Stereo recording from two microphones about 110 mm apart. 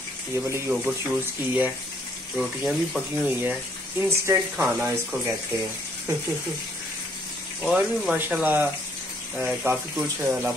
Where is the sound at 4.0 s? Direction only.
20° right (ahead or behind).